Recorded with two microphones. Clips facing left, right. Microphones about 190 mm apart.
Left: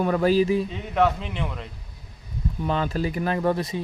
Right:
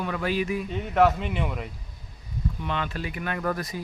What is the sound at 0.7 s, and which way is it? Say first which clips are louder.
A man's voice: right 1 dB; centre (ahead or behind).